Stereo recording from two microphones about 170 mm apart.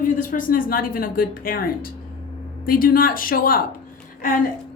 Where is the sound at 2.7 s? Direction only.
60° left (ahead or behind).